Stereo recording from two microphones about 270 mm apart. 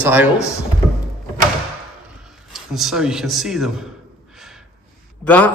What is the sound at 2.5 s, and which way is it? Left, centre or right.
A man's voice, centre.